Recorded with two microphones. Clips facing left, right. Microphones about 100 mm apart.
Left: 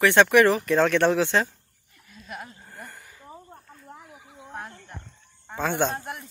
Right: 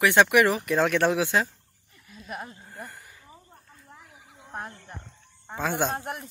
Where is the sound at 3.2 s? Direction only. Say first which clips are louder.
Left 7 dB; 40° left (ahead or behind).